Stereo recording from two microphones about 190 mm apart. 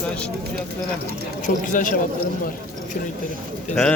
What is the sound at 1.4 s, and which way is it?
Speech, 40° left (ahead or behind).